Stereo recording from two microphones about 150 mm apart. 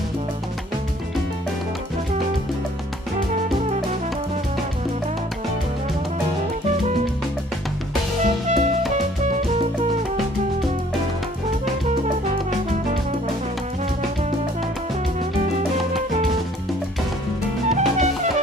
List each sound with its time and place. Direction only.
8.5 s music: 50° right (ahead or behind)
17.7 s music: 50° right (ahead or behind)